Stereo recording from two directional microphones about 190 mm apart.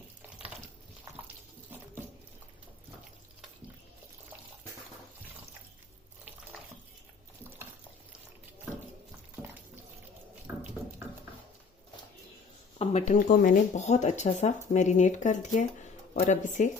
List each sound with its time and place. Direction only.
12.8 s speech: 35° left (ahead or behind)